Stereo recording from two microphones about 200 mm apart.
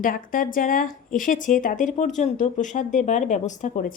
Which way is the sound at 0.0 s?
45° left (ahead or behind).